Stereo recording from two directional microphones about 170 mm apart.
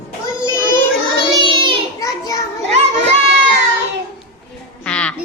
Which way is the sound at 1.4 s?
30° right (ahead or behind).